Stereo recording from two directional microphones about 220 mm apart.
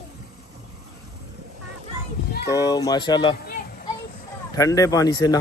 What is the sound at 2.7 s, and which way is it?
Speech, 20° left (ahead or behind).